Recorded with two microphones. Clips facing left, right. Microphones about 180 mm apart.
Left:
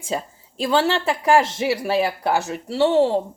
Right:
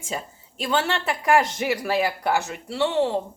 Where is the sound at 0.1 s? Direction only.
35° left (ahead or behind).